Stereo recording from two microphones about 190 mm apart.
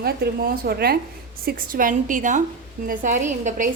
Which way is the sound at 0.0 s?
55° right (ahead or behind).